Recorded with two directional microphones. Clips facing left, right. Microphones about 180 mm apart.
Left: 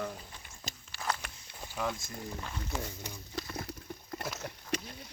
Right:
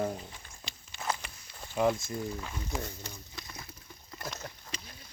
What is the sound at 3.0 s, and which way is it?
Speech, 15° left (ahead or behind).